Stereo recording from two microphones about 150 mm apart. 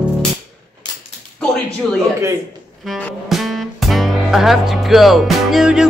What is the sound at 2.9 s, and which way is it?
Speech, centre (ahead or behind).